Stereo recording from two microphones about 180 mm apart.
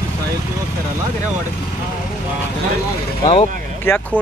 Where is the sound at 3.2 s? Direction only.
30° left (ahead or behind).